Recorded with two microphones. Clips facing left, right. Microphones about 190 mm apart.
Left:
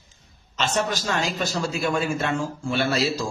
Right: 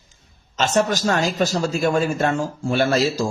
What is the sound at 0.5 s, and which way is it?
A man's voice, 40° right (ahead or behind).